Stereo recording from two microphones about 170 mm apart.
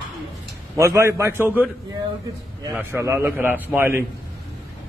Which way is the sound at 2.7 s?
10° right (ahead or behind).